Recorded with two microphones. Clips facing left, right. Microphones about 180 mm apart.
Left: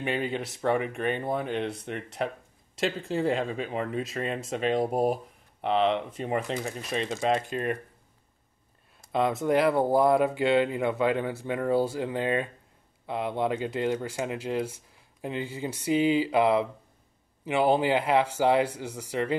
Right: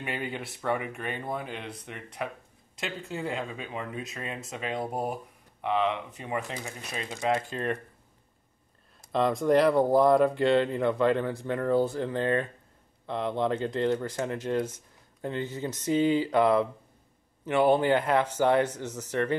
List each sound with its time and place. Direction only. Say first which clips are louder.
0.0 s speech: left 5 dB; 25° left (ahead or behind)
1.4 s speech: left 8 dB; 60° left (ahead or behind)
3.1 s speech: left 5 dB; 30° left (ahead or behind)
6.2 s speech: left 3 dB; 35° left (ahead or behind); by 7.7 s 15° left (ahead or behind)
9.1 s speech: right 1 dB; 5° left (ahead or behind)